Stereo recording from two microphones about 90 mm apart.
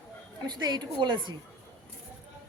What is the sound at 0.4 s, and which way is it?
Speech, 55° right (ahead or behind).